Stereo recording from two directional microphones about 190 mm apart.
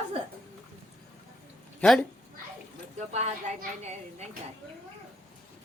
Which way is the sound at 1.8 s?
5° left (ahead or behind).